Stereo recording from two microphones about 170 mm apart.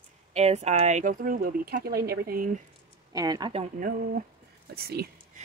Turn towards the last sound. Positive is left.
turn(degrees=-65)  # may be behind; listen again after turning